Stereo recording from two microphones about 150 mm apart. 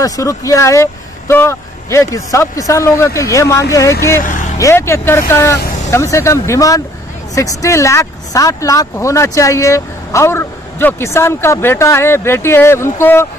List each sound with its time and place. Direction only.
0.0 s speech: 20° left (ahead or behind)
4.2 s vehicle: 60° left (ahead or behind)
4.6 s speech: 20° left (ahead or behind)